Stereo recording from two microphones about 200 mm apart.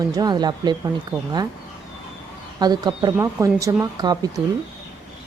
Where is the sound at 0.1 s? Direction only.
20° right (ahead or behind).